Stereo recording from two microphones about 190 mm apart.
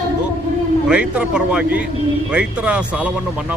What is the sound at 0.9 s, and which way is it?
A man's voice, 5° right (ahead or behind).